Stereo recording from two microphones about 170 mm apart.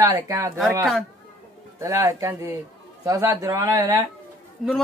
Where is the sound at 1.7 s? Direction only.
20° right (ahead or behind).